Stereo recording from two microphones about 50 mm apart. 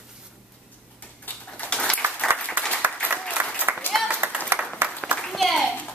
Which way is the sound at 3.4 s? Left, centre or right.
Right.